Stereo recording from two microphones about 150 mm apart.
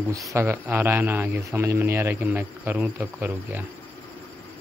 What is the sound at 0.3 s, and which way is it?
Speech, 20° right (ahead or behind).